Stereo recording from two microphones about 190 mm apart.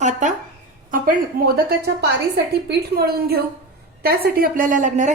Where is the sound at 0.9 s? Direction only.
50° right (ahead or behind).